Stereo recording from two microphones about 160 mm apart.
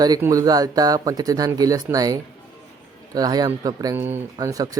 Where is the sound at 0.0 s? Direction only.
20° right (ahead or behind).